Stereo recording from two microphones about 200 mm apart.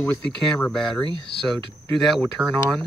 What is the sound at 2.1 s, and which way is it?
Speech, centre (ahead or behind).